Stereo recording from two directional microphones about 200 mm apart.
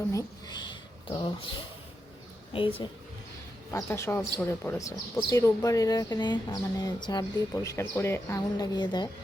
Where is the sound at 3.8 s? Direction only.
10° left (ahead or behind).